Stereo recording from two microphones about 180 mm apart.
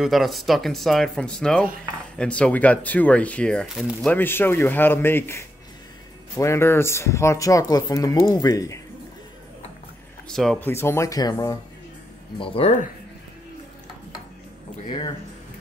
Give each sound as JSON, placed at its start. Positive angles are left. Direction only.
{"t": 0.0, "sound": "speech", "side_deg": 0}
{"t": 10.2, "sound": "speech", "side_deg": 0}
{"t": 10.7, "sound": "speech", "side_deg": 15}
{"t": 12.4, "sound": "speech", "side_deg": 30}
{"t": 14.9, "sound": "speech", "side_deg": 25}